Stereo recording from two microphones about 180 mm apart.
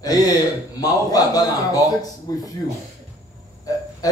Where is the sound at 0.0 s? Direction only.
20° left (ahead or behind).